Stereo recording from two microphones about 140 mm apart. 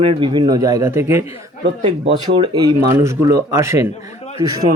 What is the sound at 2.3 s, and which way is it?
Speech, 30° right (ahead or behind).